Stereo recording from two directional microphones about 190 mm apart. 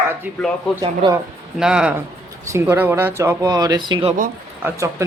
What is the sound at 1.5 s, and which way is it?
Speech, 5° right (ahead or behind).